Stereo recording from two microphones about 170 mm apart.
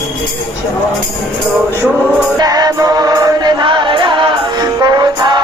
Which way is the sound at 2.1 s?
5° left (ahead or behind).